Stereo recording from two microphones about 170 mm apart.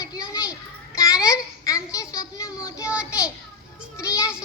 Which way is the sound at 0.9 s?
20° left (ahead or behind).